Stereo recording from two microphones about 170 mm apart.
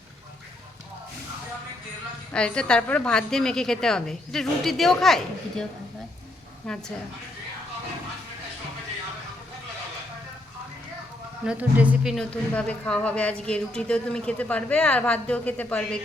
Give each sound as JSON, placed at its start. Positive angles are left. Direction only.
{"t": 2.3, "sound": "a woman's voice", "side_deg": 5}
{"t": 6.7, "sound": "a woman's voice", "side_deg": 5}
{"t": 11.4, "sound": "a woman's voice", "side_deg": -10}